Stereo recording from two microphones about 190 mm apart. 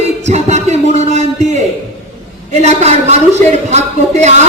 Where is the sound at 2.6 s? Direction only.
35° right (ahead or behind).